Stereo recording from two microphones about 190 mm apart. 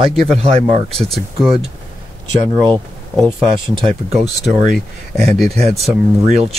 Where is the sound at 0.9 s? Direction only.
Centre (ahead or behind).